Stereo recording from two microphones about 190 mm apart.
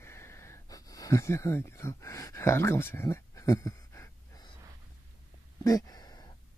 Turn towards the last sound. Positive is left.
turn(degrees=20)  # may be behind; listen again after turning